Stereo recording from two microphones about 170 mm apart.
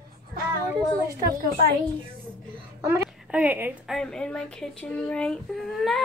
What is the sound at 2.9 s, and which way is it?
Speech, 10° right (ahead or behind).